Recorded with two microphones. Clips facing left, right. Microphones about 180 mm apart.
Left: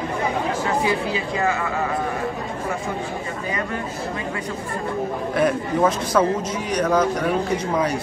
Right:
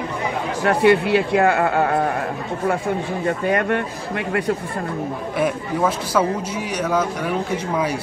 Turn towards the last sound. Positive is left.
turn(degrees=-5)  # may be behind; listen again after turning